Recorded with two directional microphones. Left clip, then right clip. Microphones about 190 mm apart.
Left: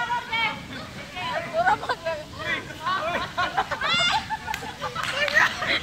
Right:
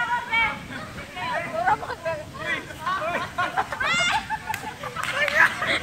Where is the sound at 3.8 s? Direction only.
15° right (ahead or behind).